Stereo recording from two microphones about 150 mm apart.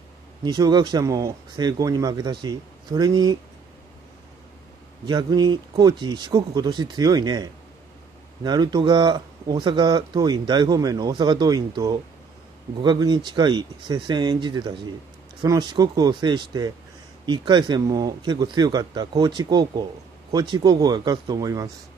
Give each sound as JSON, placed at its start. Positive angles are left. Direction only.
{"t": 0.4, "sound": "speech", "side_deg": -30}
{"t": 5.0, "sound": "speech", "side_deg": -30}